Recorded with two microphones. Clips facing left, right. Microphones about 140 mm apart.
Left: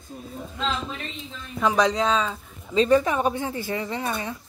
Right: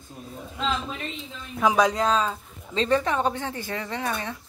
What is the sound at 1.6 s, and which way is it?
Speech, 5° right (ahead or behind).